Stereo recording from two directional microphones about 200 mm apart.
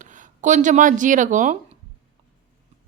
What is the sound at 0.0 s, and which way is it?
Speech, 40° right (ahead or behind).